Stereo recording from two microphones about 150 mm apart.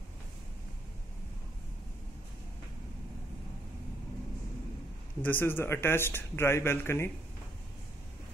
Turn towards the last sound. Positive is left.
turn(degrees=15)  # may be behind; listen again after turning